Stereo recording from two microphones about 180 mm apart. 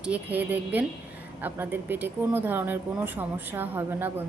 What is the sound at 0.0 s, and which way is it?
Speech, 10° right (ahead or behind).